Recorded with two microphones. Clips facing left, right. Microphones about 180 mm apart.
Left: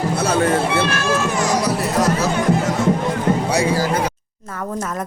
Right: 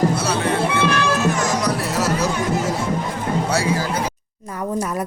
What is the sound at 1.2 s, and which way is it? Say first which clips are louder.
Music: right 1 dB; 40° right (ahead or behind).